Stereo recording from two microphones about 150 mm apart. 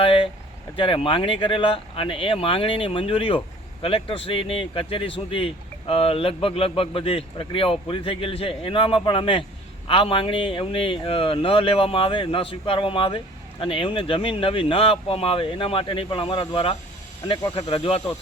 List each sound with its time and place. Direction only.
0.0 s vehicle: 35° left (ahead or behind)
0.8 s a man's voice: 35° left (ahead or behind)